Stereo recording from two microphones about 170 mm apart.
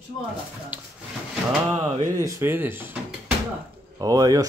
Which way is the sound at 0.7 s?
10° right (ahead or behind).